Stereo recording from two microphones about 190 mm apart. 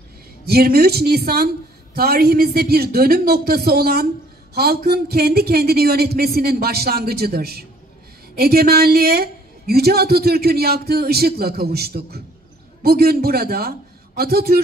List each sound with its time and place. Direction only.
0.5 s a woman's voice: 55° right (ahead or behind)